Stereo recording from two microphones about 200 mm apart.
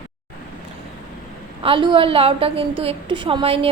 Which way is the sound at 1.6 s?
25° right (ahead or behind).